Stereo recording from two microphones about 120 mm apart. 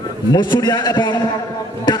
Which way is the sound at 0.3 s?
35° left (ahead or behind).